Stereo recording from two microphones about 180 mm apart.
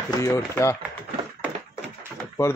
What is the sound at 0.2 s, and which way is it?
Speech, 15° left (ahead or behind).